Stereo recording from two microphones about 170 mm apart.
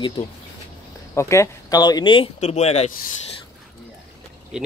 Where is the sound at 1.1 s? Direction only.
15° left (ahead or behind); by 2.9 s 40° left (ahead or behind).